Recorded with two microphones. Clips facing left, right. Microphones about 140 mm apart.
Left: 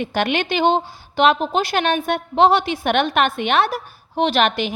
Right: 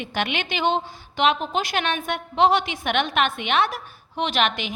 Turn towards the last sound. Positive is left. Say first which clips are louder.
# left 6 dB
turn(degrees=35)  # may be behind; listen again after turning